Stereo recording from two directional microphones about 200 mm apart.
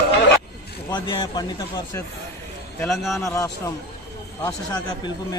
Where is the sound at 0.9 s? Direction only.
20° left (ahead or behind).